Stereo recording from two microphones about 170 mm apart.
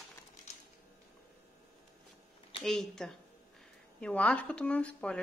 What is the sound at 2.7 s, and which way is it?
Speech, centre (ahead or behind).